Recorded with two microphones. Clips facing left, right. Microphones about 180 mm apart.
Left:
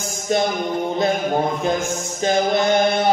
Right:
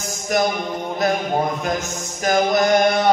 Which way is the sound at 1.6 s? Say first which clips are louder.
Left 3 dB; 25° left (ahead or behind).